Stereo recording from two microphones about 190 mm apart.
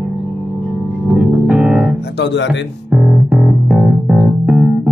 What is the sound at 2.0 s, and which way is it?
Speech, 60° left (ahead or behind).